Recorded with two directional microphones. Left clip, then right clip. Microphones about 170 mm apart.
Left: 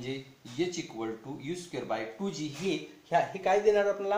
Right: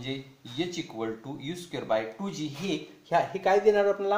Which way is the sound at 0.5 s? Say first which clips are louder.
Right 1 dB; 40° right (ahead or behind).